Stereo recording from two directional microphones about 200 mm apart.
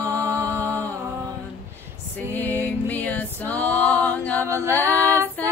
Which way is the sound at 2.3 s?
10° left (ahead or behind).